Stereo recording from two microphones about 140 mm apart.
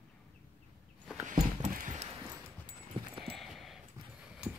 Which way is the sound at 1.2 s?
65° right (ahead or behind).